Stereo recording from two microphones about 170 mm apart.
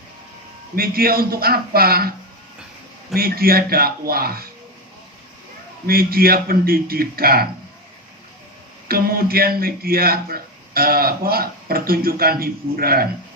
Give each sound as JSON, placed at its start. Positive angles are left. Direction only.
{"t": 0.8, "sound": "a man's voice", "side_deg": -60}
{"t": 3.2, "sound": "a man's voice", "side_deg": -60}
{"t": 5.8, "sound": "a man's voice", "side_deg": -60}
{"t": 8.9, "sound": "a man's voice", "side_deg": -60}